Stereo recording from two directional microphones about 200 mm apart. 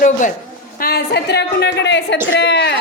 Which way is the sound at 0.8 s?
50° left (ahead or behind).